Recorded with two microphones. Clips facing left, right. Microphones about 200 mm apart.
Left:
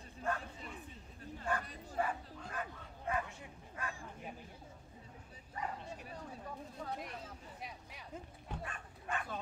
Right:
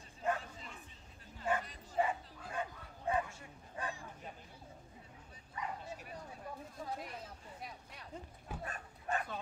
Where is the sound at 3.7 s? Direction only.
30° right (ahead or behind).